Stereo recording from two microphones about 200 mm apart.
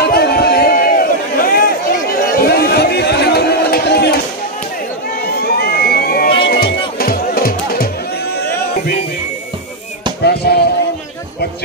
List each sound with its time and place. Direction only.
0.0 s chatter: 50° left (ahead or behind)
5.2 s crowd: 50° left (ahead or behind)
6.4 s music: 50° left (ahead or behind)
10.2 s basketball bounce: 55° left (ahead or behind)